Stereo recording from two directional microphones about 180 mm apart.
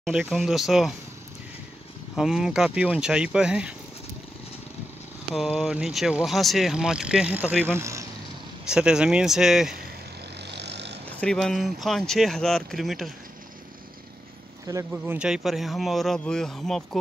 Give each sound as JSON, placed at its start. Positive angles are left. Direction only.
{"t": 0.0, "sound": "speech", "side_deg": 0}
{"t": 2.1, "sound": "speech", "side_deg": -5}
{"t": 5.3, "sound": "speech", "side_deg": 0}
{"t": 10.4, "sound": "vehicle", "side_deg": -70}
{"t": 11.1, "sound": "speech", "side_deg": 5}
{"t": 14.7, "sound": "speech", "side_deg": -20}
{"t": 15.1, "sound": "speech", "side_deg": -5}